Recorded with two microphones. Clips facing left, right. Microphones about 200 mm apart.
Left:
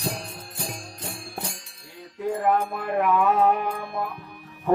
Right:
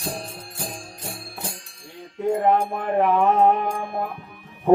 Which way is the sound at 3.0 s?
30° right (ahead or behind).